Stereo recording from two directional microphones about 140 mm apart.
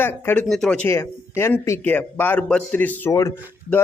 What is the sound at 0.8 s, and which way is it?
Speech, 20° left (ahead or behind).